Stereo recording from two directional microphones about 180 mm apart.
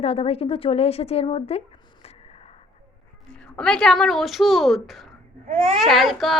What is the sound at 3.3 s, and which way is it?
Speech, 5° left (ahead or behind).